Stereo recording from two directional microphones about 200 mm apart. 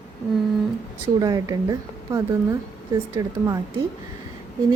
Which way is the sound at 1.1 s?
20° right (ahead or behind).